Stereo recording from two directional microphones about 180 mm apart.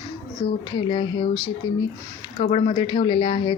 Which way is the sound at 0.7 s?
25° left (ahead or behind).